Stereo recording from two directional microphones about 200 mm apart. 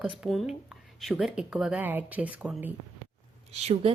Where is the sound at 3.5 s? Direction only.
35° right (ahead or behind).